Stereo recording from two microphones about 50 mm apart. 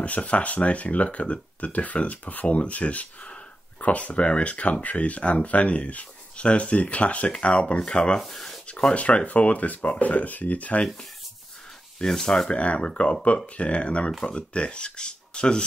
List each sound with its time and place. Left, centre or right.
0.0 s speech: left
8.2 s speech: centre
8.6 s speech: left
12.0 s speech: centre
12.4 s speech: left